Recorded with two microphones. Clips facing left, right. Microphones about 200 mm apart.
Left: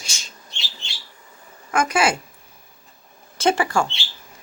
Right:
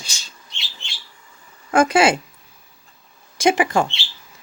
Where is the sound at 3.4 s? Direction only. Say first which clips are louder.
Right 2 dB; 15° right (ahead or behind).